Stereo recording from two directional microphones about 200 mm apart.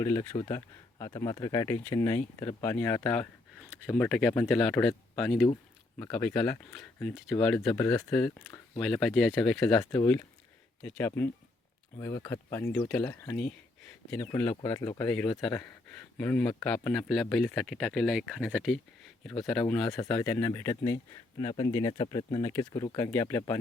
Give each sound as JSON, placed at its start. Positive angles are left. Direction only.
{"t": 0.0, "sound": "speech", "side_deg": 20}
{"t": 10.0, "sound": "speech", "side_deg": 15}